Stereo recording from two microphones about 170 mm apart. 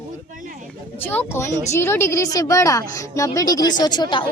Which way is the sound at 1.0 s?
10° left (ahead or behind).